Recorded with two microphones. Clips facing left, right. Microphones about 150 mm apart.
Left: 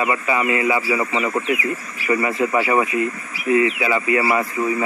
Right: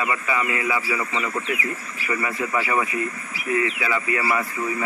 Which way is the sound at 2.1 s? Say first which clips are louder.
Left 6 dB; 25° left (ahead or behind).